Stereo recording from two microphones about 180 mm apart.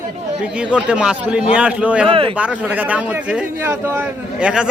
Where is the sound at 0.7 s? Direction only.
5° right (ahead or behind).